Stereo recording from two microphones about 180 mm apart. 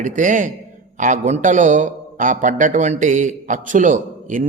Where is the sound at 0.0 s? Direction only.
45° right (ahead or behind).